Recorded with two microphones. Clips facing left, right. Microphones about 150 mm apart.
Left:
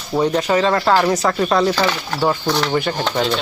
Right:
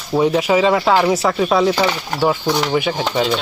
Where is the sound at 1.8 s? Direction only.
15° right (ahead or behind).